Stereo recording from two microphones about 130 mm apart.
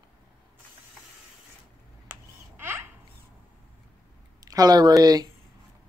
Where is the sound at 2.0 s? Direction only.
15° right (ahead or behind).